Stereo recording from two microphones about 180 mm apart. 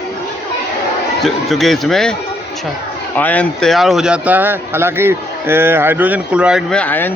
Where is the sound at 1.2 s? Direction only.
Centre (ahead or behind).